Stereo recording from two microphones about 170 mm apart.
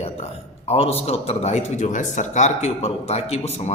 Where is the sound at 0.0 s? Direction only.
35° left (ahead or behind).